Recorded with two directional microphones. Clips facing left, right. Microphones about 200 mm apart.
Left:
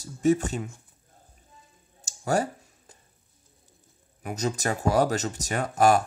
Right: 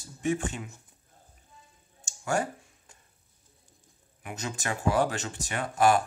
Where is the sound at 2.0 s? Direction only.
40° left (ahead or behind).